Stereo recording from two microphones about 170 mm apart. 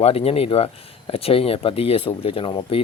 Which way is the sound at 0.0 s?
35° left (ahead or behind).